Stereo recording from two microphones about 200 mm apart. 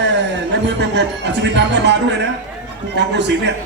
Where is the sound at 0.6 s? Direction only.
60° right (ahead or behind).